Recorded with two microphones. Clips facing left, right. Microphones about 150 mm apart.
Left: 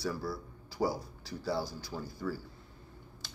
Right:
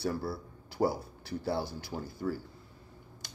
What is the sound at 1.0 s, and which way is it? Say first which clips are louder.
Speech: right 4 dB; 55° right (ahead or behind).